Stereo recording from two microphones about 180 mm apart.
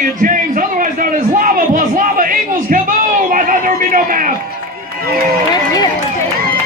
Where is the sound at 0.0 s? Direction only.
50° right (ahead or behind).